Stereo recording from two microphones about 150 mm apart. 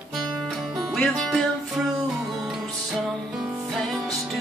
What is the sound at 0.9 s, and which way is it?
Music, 5° left (ahead or behind).